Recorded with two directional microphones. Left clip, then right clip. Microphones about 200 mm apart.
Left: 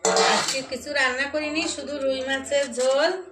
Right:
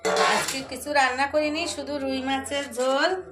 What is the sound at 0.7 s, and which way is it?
A woman's voice, 65° right (ahead or behind).